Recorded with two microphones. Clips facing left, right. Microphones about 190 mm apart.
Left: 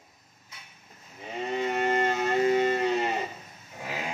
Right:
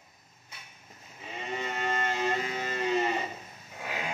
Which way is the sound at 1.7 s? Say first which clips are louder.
Left 6 dB; 55° left (ahead or behind).